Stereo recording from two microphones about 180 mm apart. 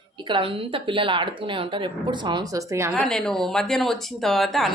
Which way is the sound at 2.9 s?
5° left (ahead or behind).